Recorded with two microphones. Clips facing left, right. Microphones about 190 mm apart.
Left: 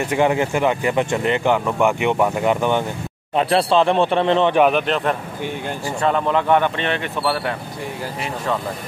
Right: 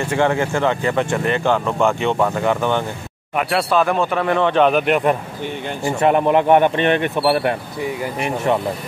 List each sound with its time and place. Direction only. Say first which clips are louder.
0.0 s speech: even; 15° left (ahead or behind)
3.3 s speech: left 2 dB; 30° left (ahead or behind)
4.7 s speech: right 3 dB; 10° right (ahead or behind)